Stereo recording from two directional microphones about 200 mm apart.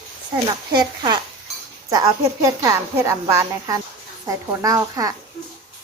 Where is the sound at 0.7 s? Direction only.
20° right (ahead or behind).